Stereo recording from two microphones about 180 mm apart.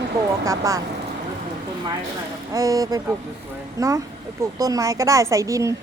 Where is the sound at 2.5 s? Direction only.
20° right (ahead or behind).